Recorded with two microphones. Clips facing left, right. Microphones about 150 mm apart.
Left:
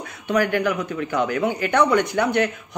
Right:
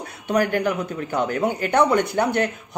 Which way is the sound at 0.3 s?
35° right (ahead or behind).